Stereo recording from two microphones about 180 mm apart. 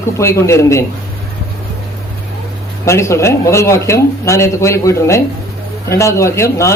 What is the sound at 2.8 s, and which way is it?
Speech, 15° left (ahead or behind).